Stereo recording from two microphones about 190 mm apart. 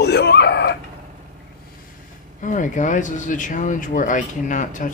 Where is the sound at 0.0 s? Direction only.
60° left (ahead or behind).